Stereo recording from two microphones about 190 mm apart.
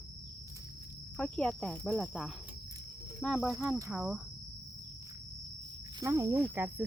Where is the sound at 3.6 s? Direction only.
15° right (ahead or behind).